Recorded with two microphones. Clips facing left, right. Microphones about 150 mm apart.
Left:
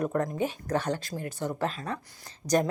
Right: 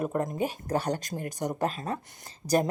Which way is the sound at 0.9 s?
45° right (ahead or behind).